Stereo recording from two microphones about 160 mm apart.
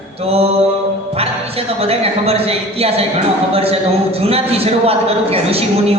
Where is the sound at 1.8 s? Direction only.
40° right (ahead or behind).